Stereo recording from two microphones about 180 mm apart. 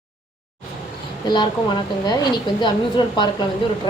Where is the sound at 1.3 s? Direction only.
25° left (ahead or behind).